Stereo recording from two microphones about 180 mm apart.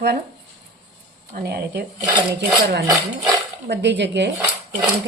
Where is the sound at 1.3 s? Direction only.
60° right (ahead or behind).